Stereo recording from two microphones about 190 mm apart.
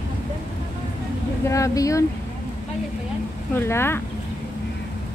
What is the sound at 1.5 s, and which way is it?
Speech, 15° left (ahead or behind).